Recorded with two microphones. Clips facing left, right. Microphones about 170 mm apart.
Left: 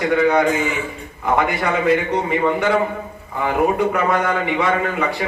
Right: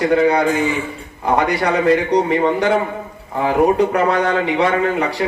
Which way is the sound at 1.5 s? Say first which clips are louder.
Right 3 dB; 35° right (ahead or behind).